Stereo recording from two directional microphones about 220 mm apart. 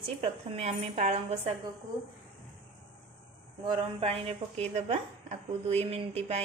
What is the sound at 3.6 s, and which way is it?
A woman's voice, 25° right (ahead or behind).